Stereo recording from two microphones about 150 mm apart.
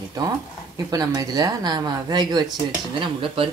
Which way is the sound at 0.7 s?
25° right (ahead or behind).